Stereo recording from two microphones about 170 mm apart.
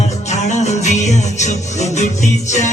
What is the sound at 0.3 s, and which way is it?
Music, 40° left (ahead or behind).